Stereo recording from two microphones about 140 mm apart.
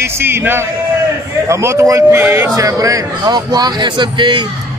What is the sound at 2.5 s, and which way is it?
A man's voice, 25° right (ahead or behind).